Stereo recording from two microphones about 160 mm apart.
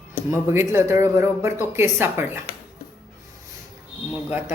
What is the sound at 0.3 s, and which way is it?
Speech, 15° right (ahead or behind).